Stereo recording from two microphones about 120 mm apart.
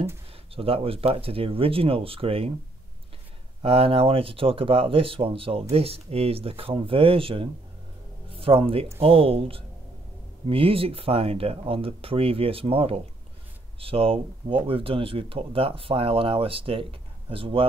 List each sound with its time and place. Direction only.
0.6 s speech: 50° right (ahead or behind)
3.6 s speech: 55° right (ahead or behind)